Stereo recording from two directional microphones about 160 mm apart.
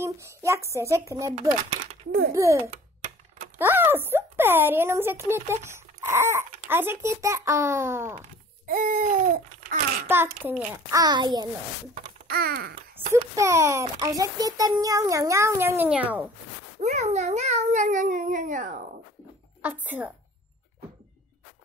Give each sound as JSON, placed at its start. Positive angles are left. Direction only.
{"t": 0.0, "sound": "speech", "side_deg": -15}
{"t": 2.3, "sound": "speech", "side_deg": -20}
{"t": 8.6, "sound": "babbling", "side_deg": -60}
{"t": 10.0, "sound": "speech", "side_deg": -15}
{"t": 10.9, "sound": "speech", "side_deg": -25}
{"t": 12.3, "sound": "babbling", "side_deg": -70}
{"t": 12.9, "sound": "speech", "side_deg": -20}
{"t": 16.8, "sound": "speech", "side_deg": -45}
{"t": 19.6, "sound": "speech", "side_deg": -10}